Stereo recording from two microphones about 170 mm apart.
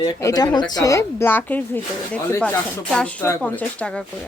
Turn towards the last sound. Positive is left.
turn(degrees=10)  # may be behind; listen again after turning